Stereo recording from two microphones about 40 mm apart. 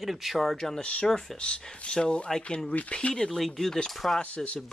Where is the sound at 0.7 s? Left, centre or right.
Left.